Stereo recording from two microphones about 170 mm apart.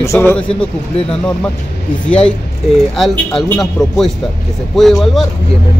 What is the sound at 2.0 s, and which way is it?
Speech, 5° left (ahead or behind).